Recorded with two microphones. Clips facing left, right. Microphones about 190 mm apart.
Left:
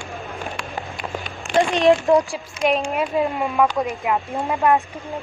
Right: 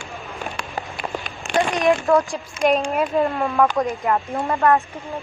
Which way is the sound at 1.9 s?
20° left (ahead or behind).